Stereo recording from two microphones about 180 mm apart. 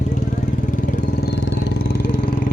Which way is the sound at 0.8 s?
65° left (ahead or behind).